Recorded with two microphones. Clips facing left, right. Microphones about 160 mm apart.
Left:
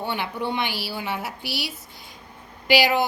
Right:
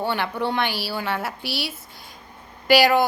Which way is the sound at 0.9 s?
60° right (ahead or behind).